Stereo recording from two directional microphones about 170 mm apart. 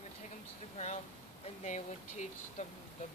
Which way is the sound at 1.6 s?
45° left (ahead or behind).